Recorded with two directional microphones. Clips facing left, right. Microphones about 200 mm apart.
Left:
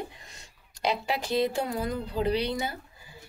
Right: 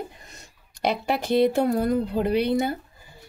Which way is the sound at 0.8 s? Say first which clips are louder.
Right 4 dB; 60° right (ahead or behind).